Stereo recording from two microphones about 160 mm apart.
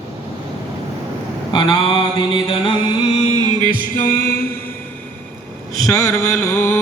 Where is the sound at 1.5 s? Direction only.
30° left (ahead or behind).